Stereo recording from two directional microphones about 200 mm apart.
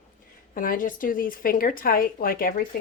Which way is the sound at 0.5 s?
45° left (ahead or behind).